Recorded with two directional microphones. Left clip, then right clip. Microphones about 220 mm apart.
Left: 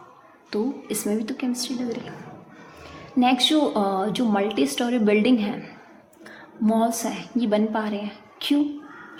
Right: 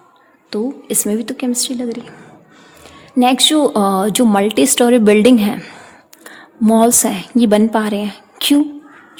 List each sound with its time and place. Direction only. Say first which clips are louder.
0.5 s a woman's voice: right 7 dB; 45° right (ahead or behind)
3.2 s a woman's voice: right 8 dB; 50° right (ahead or behind)